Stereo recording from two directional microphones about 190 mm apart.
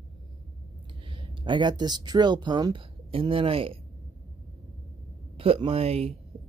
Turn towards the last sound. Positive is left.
turn(degrees=-30)  # may be behind; listen again after turning